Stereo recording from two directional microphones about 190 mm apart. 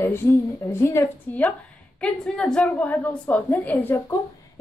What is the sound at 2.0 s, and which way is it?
A woman's voice, 5° left (ahead or behind).